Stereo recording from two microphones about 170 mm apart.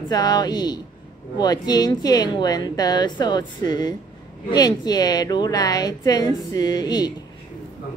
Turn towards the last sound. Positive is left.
turn(degrees=25)  # may be behind; listen again after turning